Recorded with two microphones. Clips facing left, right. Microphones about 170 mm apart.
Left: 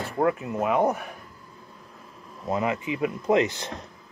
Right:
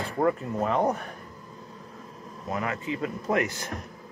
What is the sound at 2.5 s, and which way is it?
Speech, 20° left (ahead or behind).